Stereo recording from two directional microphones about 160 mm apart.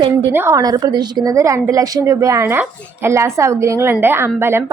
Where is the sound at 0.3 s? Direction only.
20° right (ahead or behind).